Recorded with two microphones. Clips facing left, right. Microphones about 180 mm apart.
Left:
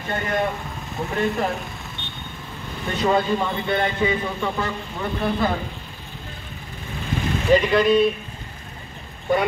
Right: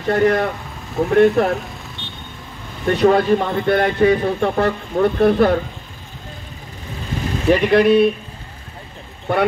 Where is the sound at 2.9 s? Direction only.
65° right (ahead or behind).